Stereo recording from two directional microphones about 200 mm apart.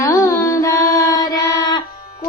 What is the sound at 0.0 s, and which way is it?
Music, 15° left (ahead or behind).